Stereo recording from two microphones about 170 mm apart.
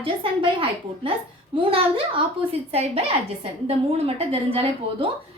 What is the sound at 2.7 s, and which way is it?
A woman's voice, 35° right (ahead or behind).